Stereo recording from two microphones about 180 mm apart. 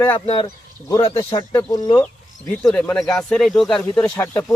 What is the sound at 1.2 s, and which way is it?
Speech, 15° left (ahead or behind).